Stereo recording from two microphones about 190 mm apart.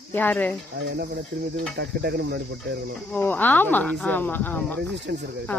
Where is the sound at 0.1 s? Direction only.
10° left (ahead or behind).